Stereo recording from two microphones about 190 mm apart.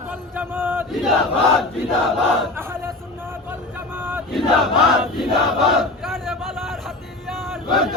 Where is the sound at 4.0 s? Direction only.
10° right (ahead or behind).